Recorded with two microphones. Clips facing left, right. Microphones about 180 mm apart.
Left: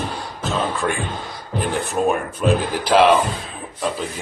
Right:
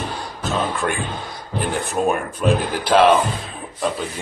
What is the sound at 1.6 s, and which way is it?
Speech, centre (ahead or behind).